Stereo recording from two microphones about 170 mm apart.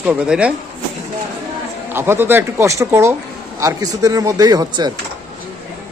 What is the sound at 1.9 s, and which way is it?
Speech, 15° right (ahead or behind).